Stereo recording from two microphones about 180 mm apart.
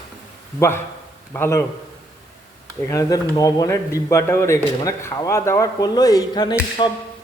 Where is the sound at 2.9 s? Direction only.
20° left (ahead or behind).